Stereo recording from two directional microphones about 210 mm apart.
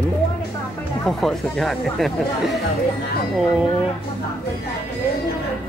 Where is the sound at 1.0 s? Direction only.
Centre (ahead or behind).